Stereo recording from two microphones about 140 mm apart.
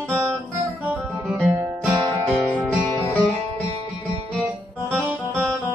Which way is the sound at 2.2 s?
10° left (ahead or behind).